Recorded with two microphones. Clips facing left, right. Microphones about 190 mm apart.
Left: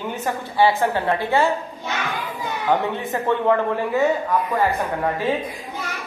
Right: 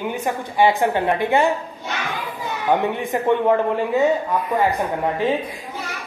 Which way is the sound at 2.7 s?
15° right (ahead or behind).